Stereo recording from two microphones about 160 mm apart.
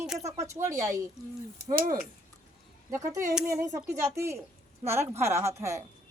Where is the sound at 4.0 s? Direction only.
15° right (ahead or behind).